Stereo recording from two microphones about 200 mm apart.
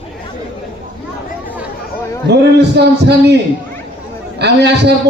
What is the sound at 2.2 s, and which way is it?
A man's voice, 55° right (ahead or behind).